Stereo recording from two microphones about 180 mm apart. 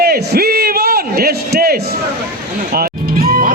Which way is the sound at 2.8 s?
55° right (ahead or behind).